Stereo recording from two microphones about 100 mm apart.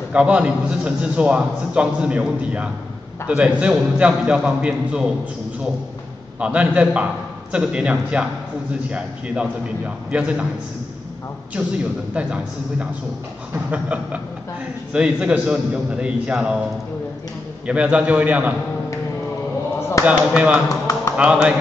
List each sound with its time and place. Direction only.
0.1 s a man's voice: 10° right (ahead or behind)
6.4 s a man's voice: 10° right (ahead or behind)
12.1 s a man's voice: 10° right (ahead or behind)
17.6 s a man's voice: 10° right (ahead or behind)
20.1 s a man's voice: 15° right (ahead or behind)
20.6 s speech: 35° left (ahead or behind)